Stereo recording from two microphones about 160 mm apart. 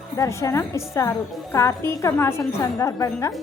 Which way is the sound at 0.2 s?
20° left (ahead or behind).